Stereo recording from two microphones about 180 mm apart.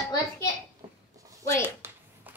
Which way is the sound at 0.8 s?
20° right (ahead or behind).